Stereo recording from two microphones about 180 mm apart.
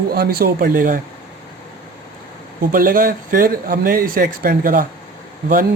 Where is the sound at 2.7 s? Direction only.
50° right (ahead or behind).